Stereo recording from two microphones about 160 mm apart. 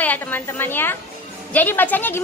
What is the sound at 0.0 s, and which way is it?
Speech, 10° left (ahead or behind).